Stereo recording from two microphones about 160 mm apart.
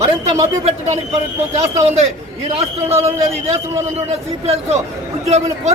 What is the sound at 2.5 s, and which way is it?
A man's voice, 40° right (ahead or behind).